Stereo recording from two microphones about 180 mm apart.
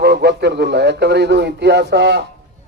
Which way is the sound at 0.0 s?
65° right (ahead or behind).